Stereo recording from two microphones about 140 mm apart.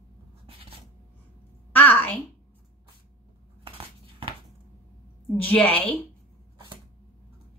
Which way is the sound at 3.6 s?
40° right (ahead or behind).